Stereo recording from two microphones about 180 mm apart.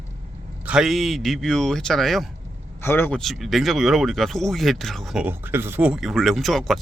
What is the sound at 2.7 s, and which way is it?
Speech, 10° left (ahead or behind).